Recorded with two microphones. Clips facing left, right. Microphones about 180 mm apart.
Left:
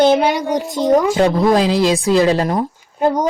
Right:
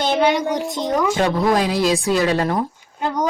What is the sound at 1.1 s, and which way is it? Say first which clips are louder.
Speech: left 4 dB; 25° left (ahead or behind).